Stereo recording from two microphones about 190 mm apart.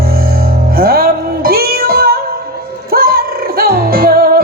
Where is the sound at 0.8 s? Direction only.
50° right (ahead or behind).